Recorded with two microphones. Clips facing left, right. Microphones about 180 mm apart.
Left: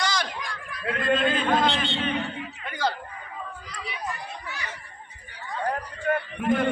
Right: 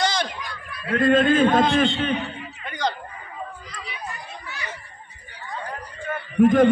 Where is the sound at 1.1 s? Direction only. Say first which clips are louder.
Right 6 dB; 45° right (ahead or behind).